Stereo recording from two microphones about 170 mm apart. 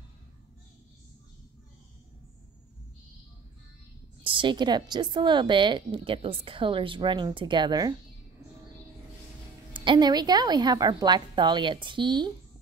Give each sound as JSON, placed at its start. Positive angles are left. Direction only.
{"t": 4.2, "sound": "a woman's voice", "side_deg": -30}
{"t": 9.7, "sound": "a woman's voice", "side_deg": -30}